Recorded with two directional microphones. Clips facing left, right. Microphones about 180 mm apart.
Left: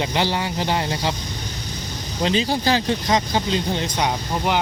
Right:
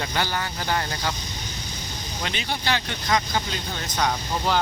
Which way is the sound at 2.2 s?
30° left (ahead or behind).